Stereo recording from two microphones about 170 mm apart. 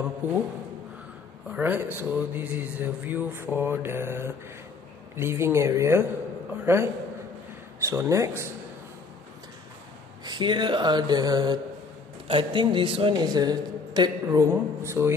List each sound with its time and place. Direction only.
0.2 s speech: 10° right (ahead or behind)
1.5 s speech: 10° right (ahead or behind)
10.2 s speech: 25° right (ahead or behind)